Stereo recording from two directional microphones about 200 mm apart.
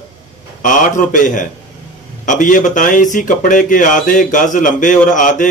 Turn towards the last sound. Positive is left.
turn(degrees=40)  # may be behind; listen again after turning